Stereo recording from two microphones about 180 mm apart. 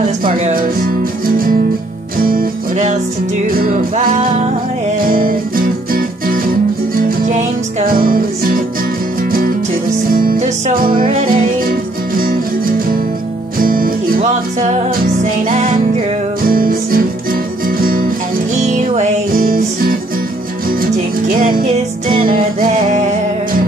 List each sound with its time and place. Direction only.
0.2 s music: 50° right (ahead or behind)
3.4 s music: 55° right (ahead or behind)
5.0 s music: 50° right (ahead or behind)
10.0 s music: 50° right (ahead or behind)
16.4 s music: 55° right (ahead or behind)
18.6 s music: 40° right (ahead or behind)
21.3 s music: 50° right (ahead or behind)